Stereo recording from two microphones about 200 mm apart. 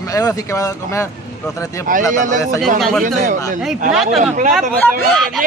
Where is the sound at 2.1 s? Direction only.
40° right (ahead or behind).